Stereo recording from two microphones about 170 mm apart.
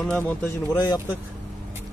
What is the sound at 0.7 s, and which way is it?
Speech, 20° left (ahead or behind).